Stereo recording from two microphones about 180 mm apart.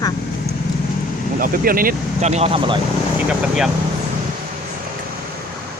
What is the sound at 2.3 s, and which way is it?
Speech, 35° right (ahead or behind).